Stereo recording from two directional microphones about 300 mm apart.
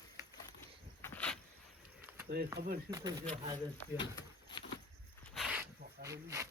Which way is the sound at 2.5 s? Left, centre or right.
Right.